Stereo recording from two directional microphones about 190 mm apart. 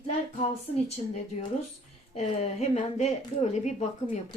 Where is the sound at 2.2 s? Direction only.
35° left (ahead or behind).